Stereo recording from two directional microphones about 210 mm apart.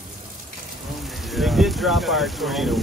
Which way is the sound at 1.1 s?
Centre (ahead or behind).